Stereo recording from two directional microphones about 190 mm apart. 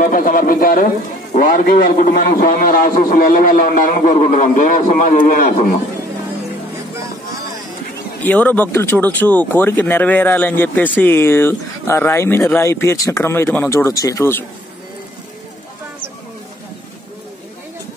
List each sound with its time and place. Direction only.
0.0 s a man's voice: 45° left (ahead or behind)
8.2 s a man's voice: 10° left (ahead or behind)